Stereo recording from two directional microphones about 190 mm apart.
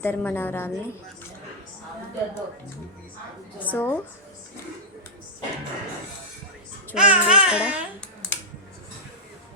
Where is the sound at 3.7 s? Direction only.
10° left (ahead or behind).